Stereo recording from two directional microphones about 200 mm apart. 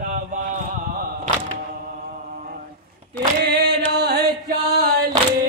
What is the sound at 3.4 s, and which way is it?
Chant, 55° right (ahead or behind).